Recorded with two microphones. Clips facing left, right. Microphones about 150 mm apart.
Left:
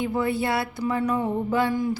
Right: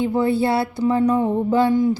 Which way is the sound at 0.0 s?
30° right (ahead or behind).